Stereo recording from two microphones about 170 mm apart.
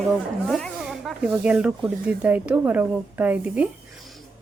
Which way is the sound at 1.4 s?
5° right (ahead or behind).